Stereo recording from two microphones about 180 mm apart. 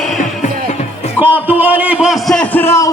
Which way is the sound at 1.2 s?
10° right (ahead or behind).